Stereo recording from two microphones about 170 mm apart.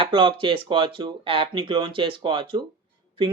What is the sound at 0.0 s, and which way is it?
Speech, 30° right (ahead or behind).